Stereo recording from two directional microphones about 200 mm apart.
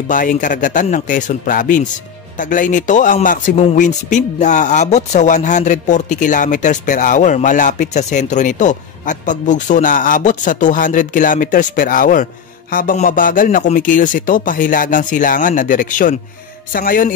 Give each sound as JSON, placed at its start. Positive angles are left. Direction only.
{"t": 0.1, "sound": "a man's voice", "side_deg": 40}